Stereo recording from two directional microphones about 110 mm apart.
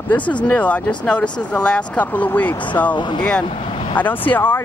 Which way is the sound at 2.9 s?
45° left (ahead or behind).